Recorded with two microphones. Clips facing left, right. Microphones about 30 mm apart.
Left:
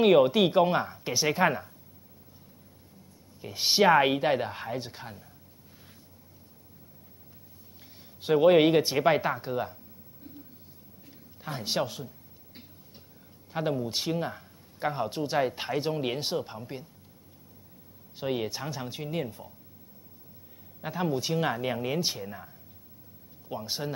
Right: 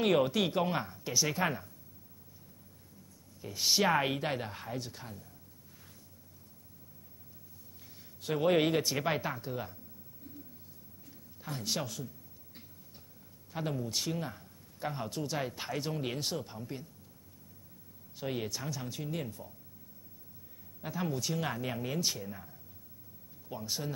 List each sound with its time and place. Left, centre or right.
0.0 s speech: centre
0.8 s speech: left
3.3 s speech: left
8.2 s a man's voice: left
8.5 s speech: centre
11.1 s a man's voice: left
13.5 s speech: left
18.1 s speech: left
20.8 s speech: left
23.5 s speech: left